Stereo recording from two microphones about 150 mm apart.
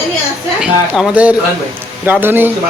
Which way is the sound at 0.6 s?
10° right (ahead or behind).